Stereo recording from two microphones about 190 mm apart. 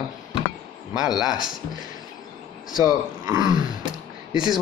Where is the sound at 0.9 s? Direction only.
5° right (ahead or behind).